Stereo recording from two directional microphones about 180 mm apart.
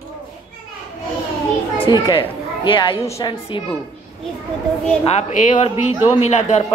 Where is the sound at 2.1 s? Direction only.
30° left (ahead or behind).